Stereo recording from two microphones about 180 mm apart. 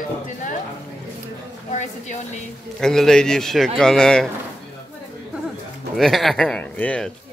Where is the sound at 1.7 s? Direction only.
40° left (ahead or behind).